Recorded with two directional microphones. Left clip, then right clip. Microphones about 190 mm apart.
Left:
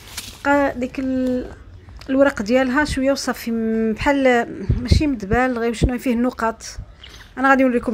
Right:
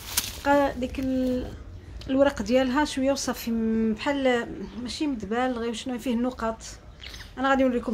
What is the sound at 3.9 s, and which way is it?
A woman's voice, 30° left (ahead or behind).